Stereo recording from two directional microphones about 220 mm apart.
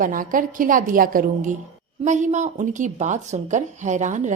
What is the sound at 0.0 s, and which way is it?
A woman's voice, 40° right (ahead or behind).